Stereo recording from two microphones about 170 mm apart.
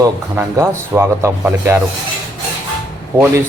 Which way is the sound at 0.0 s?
20° right (ahead or behind).